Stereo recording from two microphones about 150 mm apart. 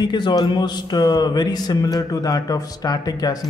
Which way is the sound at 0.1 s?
30° left (ahead or behind).